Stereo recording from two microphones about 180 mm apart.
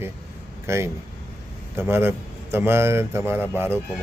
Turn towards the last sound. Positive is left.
turn(degrees=-10)  # may be behind; listen again after turning